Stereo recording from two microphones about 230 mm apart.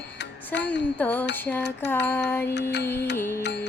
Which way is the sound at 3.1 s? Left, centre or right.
Centre.